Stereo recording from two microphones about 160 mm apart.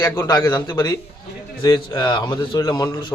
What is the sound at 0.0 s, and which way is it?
A man's voice, 20° left (ahead or behind).